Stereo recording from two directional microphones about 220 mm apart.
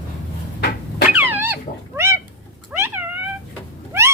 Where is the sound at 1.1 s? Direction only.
10° right (ahead or behind).